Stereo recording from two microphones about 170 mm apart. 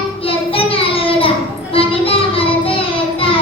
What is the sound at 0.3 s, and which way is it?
Child singing, 35° left (ahead or behind).